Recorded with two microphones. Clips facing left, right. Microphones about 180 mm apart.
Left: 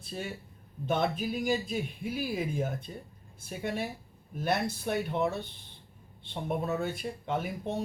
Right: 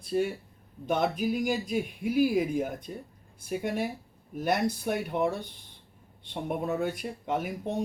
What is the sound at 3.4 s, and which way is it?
Speech, 10° right (ahead or behind).